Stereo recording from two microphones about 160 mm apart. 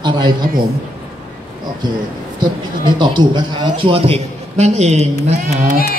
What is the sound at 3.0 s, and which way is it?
A man's voice, 25° right (ahead or behind).